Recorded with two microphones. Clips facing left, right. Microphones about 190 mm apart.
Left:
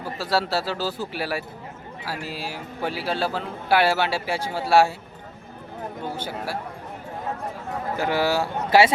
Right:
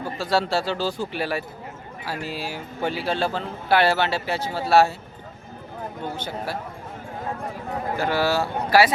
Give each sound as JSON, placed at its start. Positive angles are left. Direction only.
{"t": 0.0, "sound": "speech", "side_deg": 5}
{"t": 6.1, "sound": "speech", "side_deg": 10}
{"t": 7.9, "sound": "speech", "side_deg": 15}